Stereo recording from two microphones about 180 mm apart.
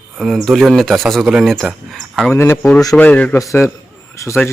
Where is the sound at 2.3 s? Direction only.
15° left (ahead or behind).